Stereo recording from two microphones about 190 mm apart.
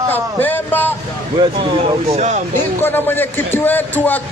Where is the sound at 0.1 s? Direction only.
10° left (ahead or behind).